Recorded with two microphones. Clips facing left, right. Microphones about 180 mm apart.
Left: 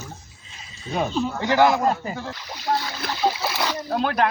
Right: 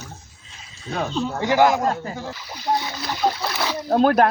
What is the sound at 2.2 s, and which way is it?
Speech, 20° right (ahead or behind).